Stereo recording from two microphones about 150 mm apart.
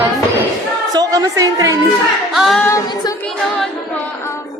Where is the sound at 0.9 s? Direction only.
25° right (ahead or behind).